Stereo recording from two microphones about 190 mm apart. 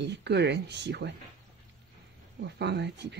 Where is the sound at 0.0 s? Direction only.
65° right (ahead or behind).